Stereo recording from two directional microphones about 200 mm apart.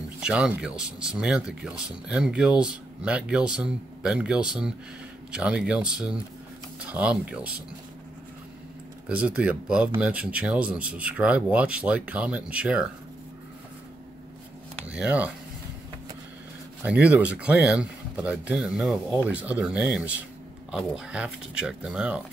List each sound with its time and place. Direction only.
0.2 s speech: 5° right (ahead or behind)
9.1 s speech: 5° right (ahead or behind)
14.9 s speech: 5° right (ahead or behind)
16.8 s speech: 5° right (ahead or behind)